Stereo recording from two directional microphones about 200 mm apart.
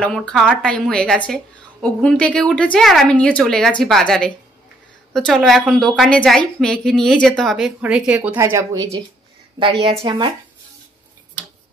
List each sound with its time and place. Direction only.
0.0 s a woman's voice: 5° left (ahead or behind); by 10.3 s 20° right (ahead or behind)